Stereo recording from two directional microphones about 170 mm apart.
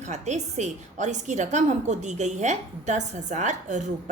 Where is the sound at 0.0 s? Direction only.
40° right (ahead or behind).